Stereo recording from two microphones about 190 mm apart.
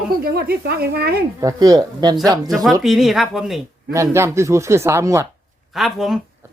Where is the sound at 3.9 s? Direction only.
15° right (ahead or behind).